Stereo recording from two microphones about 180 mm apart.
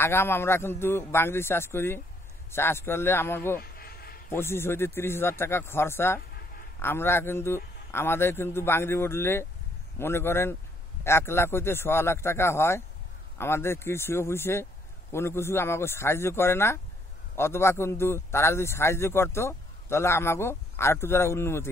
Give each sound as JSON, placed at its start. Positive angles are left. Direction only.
{"t": 0.0, "sound": "a man's voice", "side_deg": 15}
{"t": 3.5, "sound": "a sound", "side_deg": 55}
{"t": 4.3, "sound": "a man's voice", "side_deg": 15}